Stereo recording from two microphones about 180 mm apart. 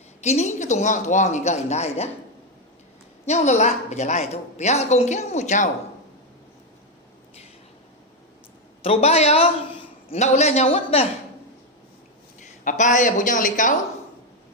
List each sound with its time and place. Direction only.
0.2 s a woman's voice: 40° left (ahead or behind)
3.2 s a woman's voice: 40° left (ahead or behind)
8.8 s a man's voice: 35° left (ahead or behind)
12.6 s a woman's voice: 45° left (ahead or behind)